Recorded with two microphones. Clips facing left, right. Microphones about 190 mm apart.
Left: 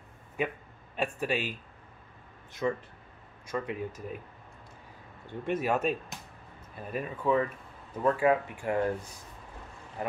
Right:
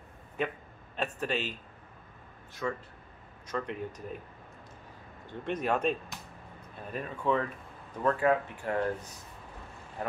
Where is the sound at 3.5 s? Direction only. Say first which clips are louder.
Left 1 dB; 10° left (ahead or behind).